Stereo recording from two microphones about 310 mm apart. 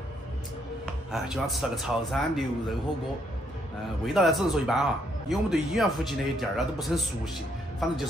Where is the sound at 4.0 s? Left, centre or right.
Centre.